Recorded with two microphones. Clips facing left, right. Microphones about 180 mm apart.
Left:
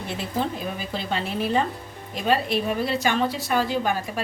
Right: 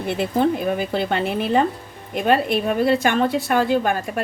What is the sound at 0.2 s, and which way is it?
A woman's voice, 55° right (ahead or behind).